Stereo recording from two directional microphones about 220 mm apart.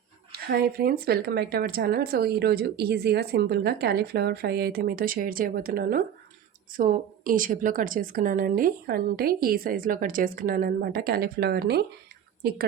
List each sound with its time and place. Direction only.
0.3 s a woman's voice: 45° right (ahead or behind)